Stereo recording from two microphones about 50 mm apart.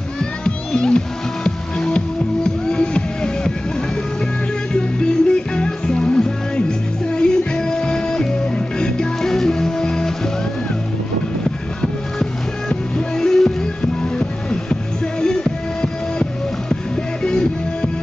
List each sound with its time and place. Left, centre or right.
0.2 s music: centre
4.7 s music: centre
11.8 s music: centre